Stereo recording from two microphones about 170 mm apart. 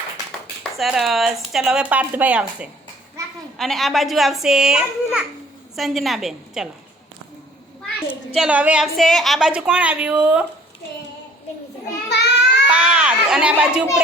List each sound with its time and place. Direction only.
0.6 s speech: centre (ahead or behind)
7.9 s a child's voice: centre (ahead or behind)
8.4 s a woman's voice: 10° right (ahead or behind)
12.0 s child singing: 80° left
12.7 s children playing: 5° right (ahead or behind)